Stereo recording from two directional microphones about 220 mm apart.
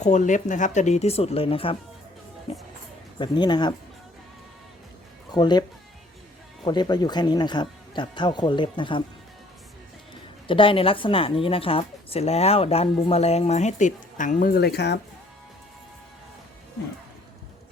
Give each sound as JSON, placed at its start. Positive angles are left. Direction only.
{"t": 0.0, "sound": "a woman's voice", "side_deg": 35}
{"t": 5.3, "sound": "a woman's voice", "side_deg": 20}
{"t": 6.7, "sound": "a woman's voice", "side_deg": 20}
{"t": 10.4, "sound": "a woman's voice", "side_deg": 25}